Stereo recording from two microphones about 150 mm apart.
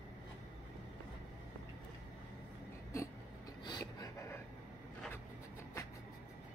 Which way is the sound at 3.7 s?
25° left (ahead or behind).